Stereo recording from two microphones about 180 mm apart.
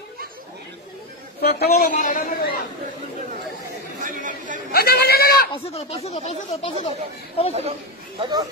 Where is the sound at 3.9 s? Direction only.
45° right (ahead or behind).